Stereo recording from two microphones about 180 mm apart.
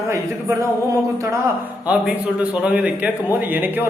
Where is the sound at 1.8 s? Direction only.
5° right (ahead or behind).